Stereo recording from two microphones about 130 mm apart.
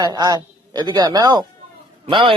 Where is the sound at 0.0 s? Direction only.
30° right (ahead or behind).